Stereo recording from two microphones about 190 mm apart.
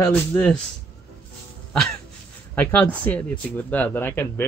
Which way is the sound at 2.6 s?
10° left (ahead or behind).